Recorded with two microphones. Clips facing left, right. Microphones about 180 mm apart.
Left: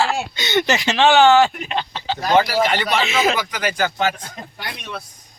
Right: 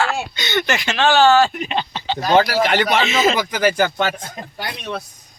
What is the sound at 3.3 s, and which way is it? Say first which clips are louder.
Speech: right 5 dB; 45° right (ahead or behind).